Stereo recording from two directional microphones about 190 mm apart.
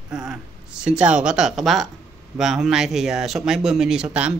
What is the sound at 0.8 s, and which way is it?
Speech, 5° right (ahead or behind).